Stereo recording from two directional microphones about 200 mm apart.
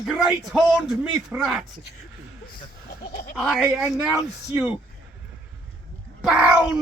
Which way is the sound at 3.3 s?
5° right (ahead or behind).